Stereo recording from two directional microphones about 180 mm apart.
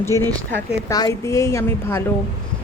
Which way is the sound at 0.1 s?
15° left (ahead or behind).